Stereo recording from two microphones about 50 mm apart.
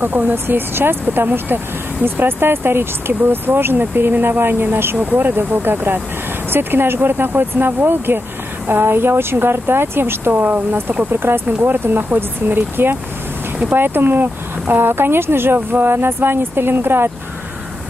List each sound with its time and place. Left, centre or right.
0.0 s speech: right
10.4 s speech: right